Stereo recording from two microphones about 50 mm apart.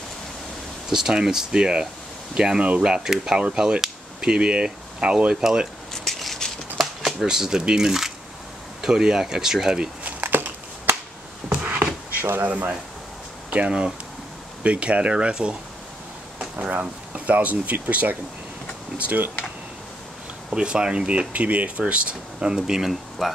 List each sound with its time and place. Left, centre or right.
0.8 s speech: centre
6.0 s a sound: centre
6.8 s shuffling cards: centre
7.2 s speech: centre
10.2 s a sound: right
11.4 s a sound: right
12.2 s speech: right
12.4 s speech: right
20.4 s speech: centre